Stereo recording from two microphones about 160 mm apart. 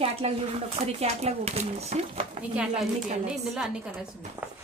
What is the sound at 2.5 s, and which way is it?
Speech, 5° right (ahead or behind).